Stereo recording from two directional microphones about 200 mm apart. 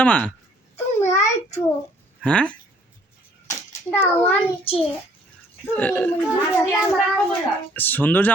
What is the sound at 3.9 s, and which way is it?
Speech, 10° left (ahead or behind).